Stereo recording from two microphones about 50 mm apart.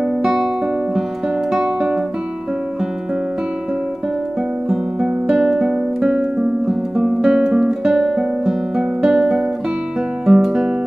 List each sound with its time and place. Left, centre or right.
0.0 s music: centre
1.5 s guitar: centre
4.6 s music: centre
5.5 s guitar: centre
6.0 s music: centre
6.6 s music: centre
7.3 s guitar: centre
10.2 s music: centre